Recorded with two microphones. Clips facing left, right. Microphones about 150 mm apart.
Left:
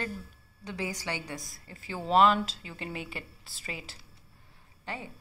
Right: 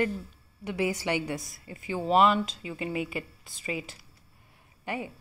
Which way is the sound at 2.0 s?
5° right (ahead or behind).